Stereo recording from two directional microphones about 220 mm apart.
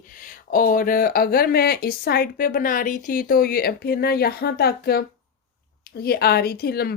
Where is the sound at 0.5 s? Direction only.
40° left (ahead or behind).